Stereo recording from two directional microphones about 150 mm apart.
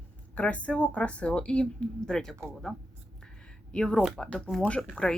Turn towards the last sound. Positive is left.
turn(degrees=5)  # may be behind; listen again after turning